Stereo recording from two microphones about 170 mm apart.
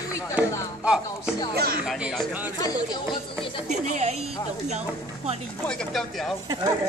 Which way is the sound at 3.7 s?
45° right (ahead or behind).